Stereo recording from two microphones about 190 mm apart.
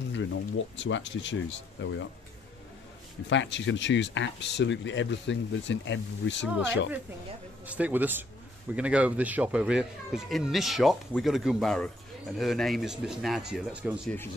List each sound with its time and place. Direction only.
0.1 s speech: 75° left (ahead or behind)
3.3 s speech: 75° left (ahead or behind)
7.6 s a man's voice: 10° right (ahead or behind)